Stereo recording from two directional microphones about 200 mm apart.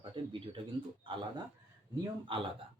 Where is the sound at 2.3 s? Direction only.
25° right (ahead or behind).